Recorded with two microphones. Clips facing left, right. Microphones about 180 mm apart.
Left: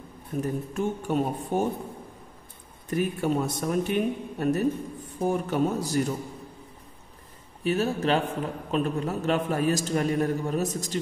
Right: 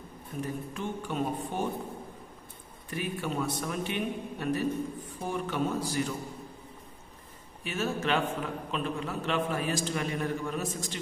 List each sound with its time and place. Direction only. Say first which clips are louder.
0.4 s speech: left 7 dB; 45° left (ahead or behind)
2.9 s speech: left 8 dB; 40° left (ahead or behind)
7.6 s a man's voice: left 6 dB; 35° left (ahead or behind)